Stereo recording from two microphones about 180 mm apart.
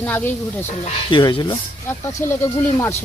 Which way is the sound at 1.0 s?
25° left (ahead or behind).